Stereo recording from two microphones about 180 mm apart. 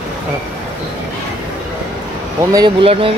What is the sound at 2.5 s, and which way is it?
Speech, 30° right (ahead or behind).